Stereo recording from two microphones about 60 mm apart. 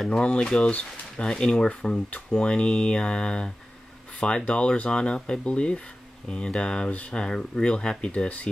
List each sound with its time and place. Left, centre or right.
0.1 s speech: centre